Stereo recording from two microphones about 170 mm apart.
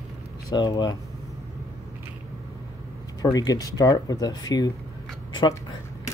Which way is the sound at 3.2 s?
20° left (ahead or behind).